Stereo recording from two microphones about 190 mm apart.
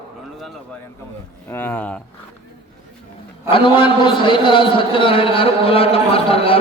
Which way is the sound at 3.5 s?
25° left (ahead or behind).